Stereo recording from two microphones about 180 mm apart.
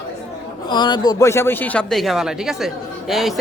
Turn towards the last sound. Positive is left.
turn(degrees=0)  # may be behind; listen again after turning